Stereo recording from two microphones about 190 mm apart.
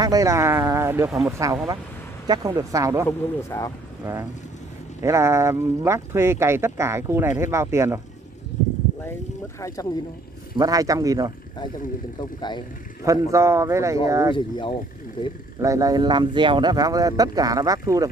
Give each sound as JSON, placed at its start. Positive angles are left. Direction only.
{"t": 0.0, "sound": "speech", "side_deg": -20}
{"t": 3.1, "sound": "speech", "side_deg": 15}
{"t": 4.0, "sound": "speech", "side_deg": -15}
{"t": 9.6, "sound": "speech", "side_deg": 15}
{"t": 10.5, "sound": "speech", "side_deg": -20}
{"t": 12.2, "sound": "speech", "side_deg": 25}
{"t": 13.0, "sound": "speech", "side_deg": -15}
{"t": 14.3, "sound": "speech", "side_deg": 25}
{"t": 15.6, "sound": "speech", "side_deg": -15}